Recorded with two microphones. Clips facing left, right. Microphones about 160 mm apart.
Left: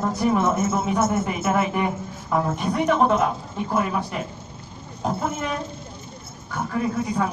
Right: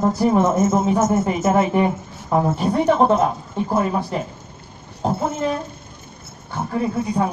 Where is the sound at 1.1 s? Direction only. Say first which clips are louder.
Right 5 dB; 30° right (ahead or behind).